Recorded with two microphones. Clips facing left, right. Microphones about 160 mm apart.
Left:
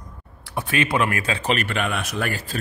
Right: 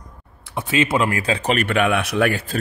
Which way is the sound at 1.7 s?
55° right (ahead or behind).